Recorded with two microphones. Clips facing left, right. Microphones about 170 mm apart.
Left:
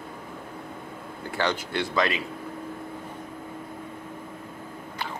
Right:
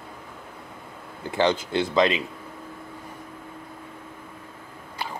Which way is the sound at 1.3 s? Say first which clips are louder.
Right 5 dB; 20° right (ahead or behind).